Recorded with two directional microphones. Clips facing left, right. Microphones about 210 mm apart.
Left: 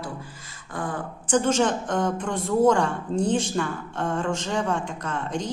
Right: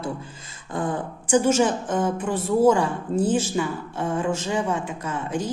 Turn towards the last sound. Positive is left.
turn(degrees=-5)  # may be behind; listen again after turning